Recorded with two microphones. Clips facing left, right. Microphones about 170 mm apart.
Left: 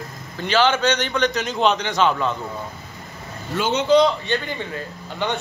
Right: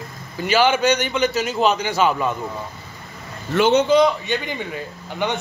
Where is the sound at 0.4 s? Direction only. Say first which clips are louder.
Right 1 dB; 10° right (ahead or behind).